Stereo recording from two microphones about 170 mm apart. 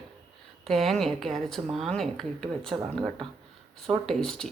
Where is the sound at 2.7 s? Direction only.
30° right (ahead or behind).